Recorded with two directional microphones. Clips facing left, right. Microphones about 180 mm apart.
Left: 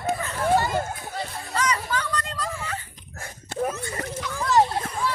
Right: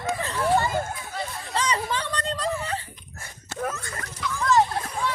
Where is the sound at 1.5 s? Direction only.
30° right (ahead or behind).